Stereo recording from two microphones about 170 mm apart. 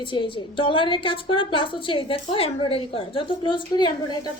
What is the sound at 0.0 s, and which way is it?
A woman's voice, 30° left (ahead or behind).